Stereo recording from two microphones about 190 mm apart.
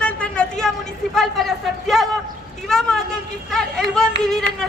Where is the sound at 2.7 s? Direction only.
Centre (ahead or behind).